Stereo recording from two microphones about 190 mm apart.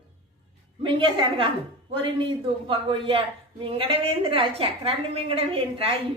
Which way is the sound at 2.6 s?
25° right (ahead or behind).